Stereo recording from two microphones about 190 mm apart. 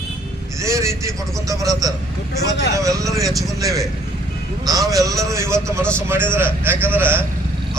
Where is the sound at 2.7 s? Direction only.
15° right (ahead or behind).